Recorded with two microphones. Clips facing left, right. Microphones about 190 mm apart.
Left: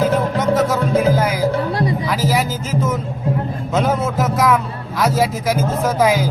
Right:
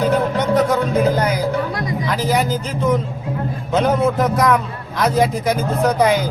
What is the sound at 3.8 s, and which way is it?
Speech, centre (ahead or behind).